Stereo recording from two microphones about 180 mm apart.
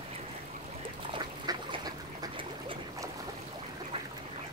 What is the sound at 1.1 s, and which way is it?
Duck, 25° right (ahead or behind).